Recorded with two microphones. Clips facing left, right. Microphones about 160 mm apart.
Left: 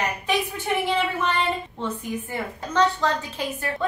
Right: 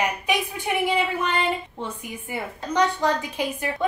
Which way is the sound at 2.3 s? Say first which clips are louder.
Right 1 dB; 15° right (ahead or behind).